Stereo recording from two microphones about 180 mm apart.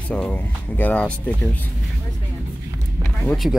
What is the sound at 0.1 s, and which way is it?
Speech, 10° left (ahead or behind).